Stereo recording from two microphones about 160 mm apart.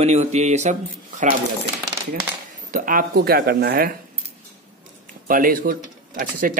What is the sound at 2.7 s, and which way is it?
Speech, 60° right (ahead or behind).